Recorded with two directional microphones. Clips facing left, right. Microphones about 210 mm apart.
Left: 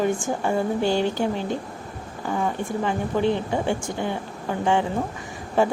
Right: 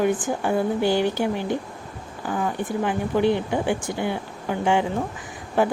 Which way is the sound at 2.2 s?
Centre (ahead or behind).